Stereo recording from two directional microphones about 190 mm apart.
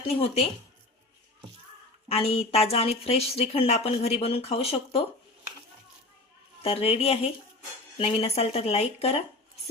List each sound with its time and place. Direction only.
0.1 s speech: 30° left (ahead or behind)
2.0 s speech: 30° left (ahead or behind)
6.6 s speech: 30° left (ahead or behind)